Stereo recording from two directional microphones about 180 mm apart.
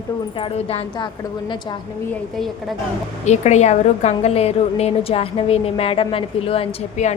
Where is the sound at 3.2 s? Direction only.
40° left (ahead or behind).